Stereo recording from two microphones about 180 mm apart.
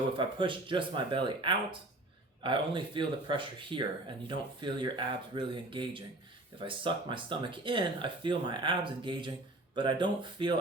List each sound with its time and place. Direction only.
0.2 s speech: 30° right (ahead or behind)